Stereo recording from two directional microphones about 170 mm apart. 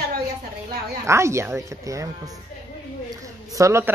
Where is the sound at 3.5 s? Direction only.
15° right (ahead or behind).